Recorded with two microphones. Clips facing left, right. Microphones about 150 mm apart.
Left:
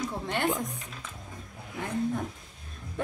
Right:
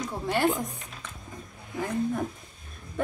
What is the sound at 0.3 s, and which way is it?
Speech, 5° right (ahead or behind).